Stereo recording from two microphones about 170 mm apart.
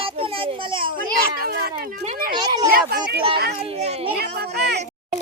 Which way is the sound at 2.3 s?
25° right (ahead or behind).